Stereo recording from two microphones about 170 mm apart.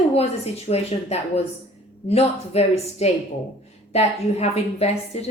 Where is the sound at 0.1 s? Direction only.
35° left (ahead or behind).